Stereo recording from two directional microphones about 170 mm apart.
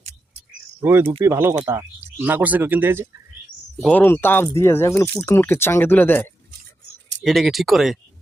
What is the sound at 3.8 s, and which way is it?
Speech, 10° left (ahead or behind).